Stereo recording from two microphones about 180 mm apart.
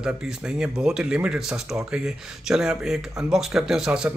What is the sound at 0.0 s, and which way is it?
Speech, 5° right (ahead or behind).